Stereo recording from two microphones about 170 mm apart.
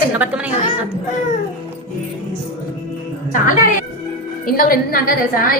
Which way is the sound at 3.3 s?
50° left (ahead or behind).